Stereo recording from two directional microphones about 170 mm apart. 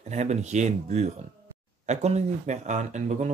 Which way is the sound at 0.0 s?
45° right (ahead or behind).